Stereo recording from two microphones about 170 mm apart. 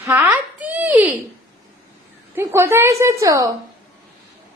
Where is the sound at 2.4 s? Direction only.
15° right (ahead or behind).